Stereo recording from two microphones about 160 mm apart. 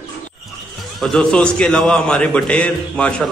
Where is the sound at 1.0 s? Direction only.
5° left (ahead or behind).